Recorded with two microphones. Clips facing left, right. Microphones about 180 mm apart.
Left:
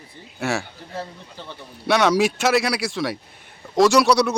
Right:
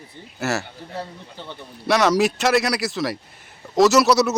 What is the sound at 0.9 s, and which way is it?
Speech, 15° right (ahead or behind).